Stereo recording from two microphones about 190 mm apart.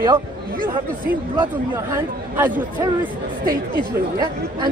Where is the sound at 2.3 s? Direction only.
10° right (ahead or behind).